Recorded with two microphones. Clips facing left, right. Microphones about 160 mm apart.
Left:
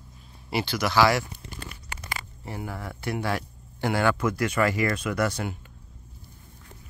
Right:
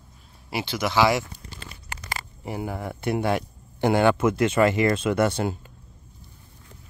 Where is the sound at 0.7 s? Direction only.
20° right (ahead or behind).